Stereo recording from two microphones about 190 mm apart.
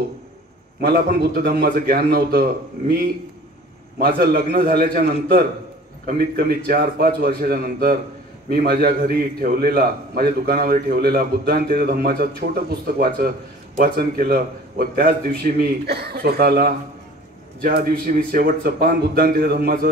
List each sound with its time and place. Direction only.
0.7 s a man's voice: 55° right (ahead or behind)
4.0 s a man's voice: 50° right (ahead or behind)